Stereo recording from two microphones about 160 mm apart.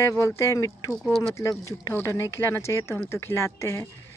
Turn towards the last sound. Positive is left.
turn(degrees=15)  # may be behind; listen again after turning